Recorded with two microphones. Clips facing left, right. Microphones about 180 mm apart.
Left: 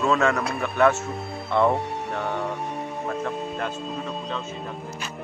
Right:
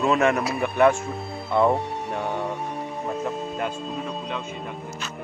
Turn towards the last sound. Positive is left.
turn(degrees=0)  # may be behind; listen again after turning